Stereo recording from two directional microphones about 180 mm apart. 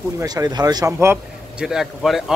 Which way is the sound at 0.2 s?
20° right (ahead or behind).